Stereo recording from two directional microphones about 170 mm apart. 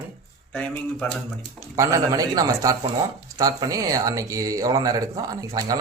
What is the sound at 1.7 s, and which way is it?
Speech, 20° right (ahead or behind).